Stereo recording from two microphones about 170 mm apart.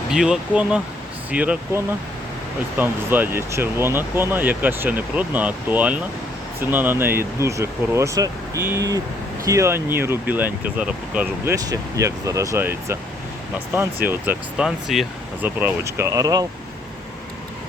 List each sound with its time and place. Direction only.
0.1 s speech: 5° right (ahead or behind)
11.5 s speech: 20° right (ahead or behind)